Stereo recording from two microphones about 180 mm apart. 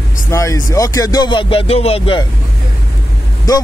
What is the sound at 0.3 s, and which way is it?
Speech, 15° left (ahead or behind).